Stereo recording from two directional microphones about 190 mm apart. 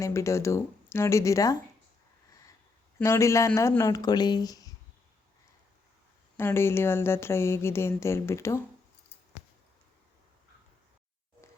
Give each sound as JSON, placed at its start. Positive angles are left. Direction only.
{"t": 0.0, "sound": "speech", "side_deg": 15}
{"t": 3.0, "sound": "speech", "side_deg": 15}
{"t": 6.3, "sound": "speech", "side_deg": 10}